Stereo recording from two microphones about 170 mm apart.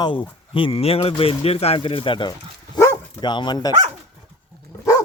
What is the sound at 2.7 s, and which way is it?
Dog, 25° left (ahead or behind).